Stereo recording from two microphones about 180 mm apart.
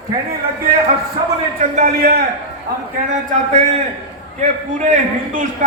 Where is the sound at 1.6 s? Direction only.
50° right (ahead or behind).